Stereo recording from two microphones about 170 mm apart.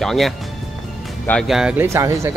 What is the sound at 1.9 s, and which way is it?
Speech, 15° right (ahead or behind).